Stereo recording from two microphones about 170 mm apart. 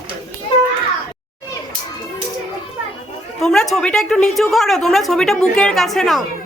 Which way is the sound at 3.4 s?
Centre (ahead or behind).